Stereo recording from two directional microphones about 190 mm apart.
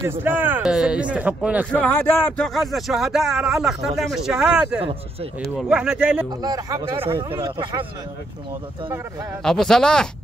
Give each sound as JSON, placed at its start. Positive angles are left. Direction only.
{"t": 0.0, "sound": "a man's voice", "side_deg": -10}
{"t": 1.7, "sound": "speech", "side_deg": 10}
{"t": 5.6, "sound": "speech", "side_deg": -5}
{"t": 6.4, "sound": "speech", "side_deg": -20}
{"t": 9.4, "sound": "speech", "side_deg": 5}